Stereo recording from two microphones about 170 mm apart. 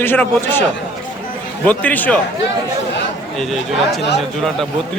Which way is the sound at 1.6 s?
10° left (ahead or behind).